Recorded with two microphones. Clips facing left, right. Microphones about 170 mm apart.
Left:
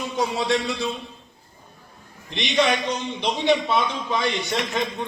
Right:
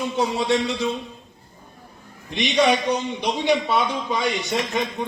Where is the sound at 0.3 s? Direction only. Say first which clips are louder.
Right 1 dB; 20° right (ahead or behind).